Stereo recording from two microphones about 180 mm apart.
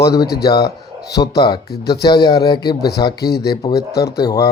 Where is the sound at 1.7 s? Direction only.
60° left (ahead or behind).